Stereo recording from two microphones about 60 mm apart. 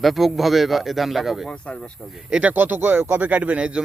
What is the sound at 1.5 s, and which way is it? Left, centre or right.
Speech, centre.